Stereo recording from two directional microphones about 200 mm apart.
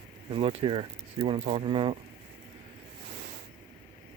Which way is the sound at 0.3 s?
25° right (ahead or behind).